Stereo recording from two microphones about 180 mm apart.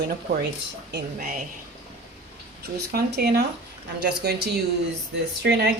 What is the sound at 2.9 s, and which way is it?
Speech, 65° right (ahead or behind).